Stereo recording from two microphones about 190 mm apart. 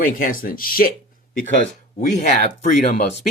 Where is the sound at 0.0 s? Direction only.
45° left (ahead or behind).